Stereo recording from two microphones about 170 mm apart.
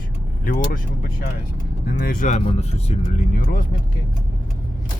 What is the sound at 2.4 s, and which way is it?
Speech, 35° left (ahead or behind).